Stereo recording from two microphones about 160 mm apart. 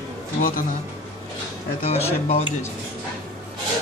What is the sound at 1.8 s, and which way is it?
Speech, 40° left (ahead or behind).